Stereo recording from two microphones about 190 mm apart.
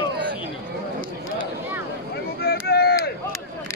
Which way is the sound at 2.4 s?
55° left (ahead or behind).